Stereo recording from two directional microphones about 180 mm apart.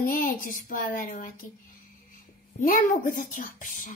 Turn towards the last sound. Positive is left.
turn(degrees=45)  # may be behind; listen again after turning